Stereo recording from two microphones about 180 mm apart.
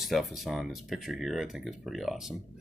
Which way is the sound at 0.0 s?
Centre (ahead or behind).